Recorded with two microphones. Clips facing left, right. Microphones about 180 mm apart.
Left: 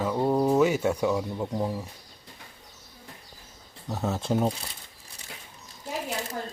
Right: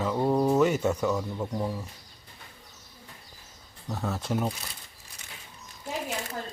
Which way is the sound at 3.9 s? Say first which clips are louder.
Left 3 dB; 25° left (ahead or behind).